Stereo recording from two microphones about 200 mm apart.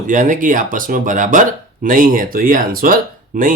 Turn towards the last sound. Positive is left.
turn(degrees=-45)  # may be behind; listen again after turning